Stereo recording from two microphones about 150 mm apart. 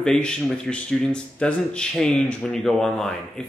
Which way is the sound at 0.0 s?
5° left (ahead or behind).